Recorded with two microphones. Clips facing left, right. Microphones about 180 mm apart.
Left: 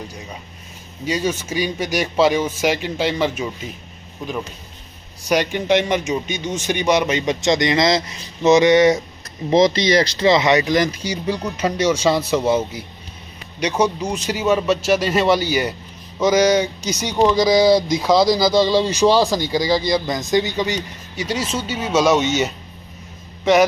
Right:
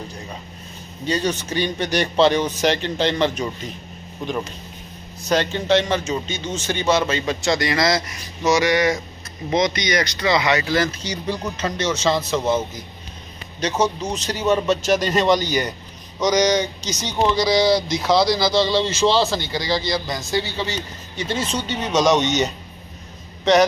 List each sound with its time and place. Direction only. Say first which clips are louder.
1.0 s a man's voice: left 1 dB; 5° left (ahead or behind)
5.2 s speech: left 2 dB; 15° left (ahead or behind)